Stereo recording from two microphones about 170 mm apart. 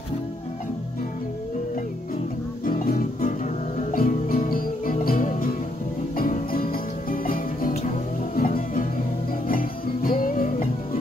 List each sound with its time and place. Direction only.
2.6 s music: 55° left (ahead or behind)